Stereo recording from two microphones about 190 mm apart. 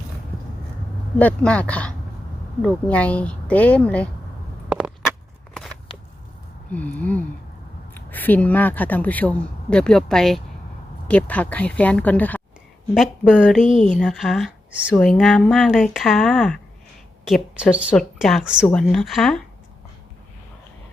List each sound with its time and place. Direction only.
1.2 s speech: 5° left (ahead or behind)
6.7 s speech: 10° left (ahead or behind)
13.6 s speech: 40° left (ahead or behind)
14.0 s speech: centre (ahead or behind)